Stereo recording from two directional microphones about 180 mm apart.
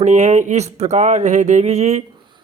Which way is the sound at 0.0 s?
40° right (ahead or behind).